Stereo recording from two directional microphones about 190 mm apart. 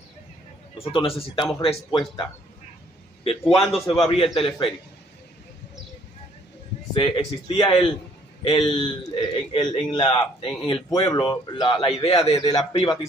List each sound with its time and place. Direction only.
0.7 s a man's voice: 30° left (ahead or behind)
3.4 s a man's voice: centre (ahead or behind)
3.8 s a man's voice: 20° left (ahead or behind)
6.9 s a man's voice: 25° left (ahead or behind)